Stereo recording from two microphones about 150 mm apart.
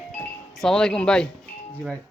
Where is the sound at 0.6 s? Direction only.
5° left (ahead or behind).